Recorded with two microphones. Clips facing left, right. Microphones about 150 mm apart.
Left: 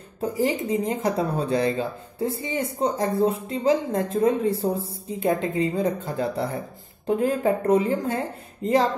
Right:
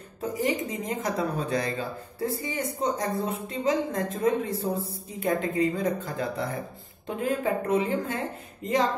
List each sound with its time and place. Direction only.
0.2 s speech: 30° left (ahead or behind)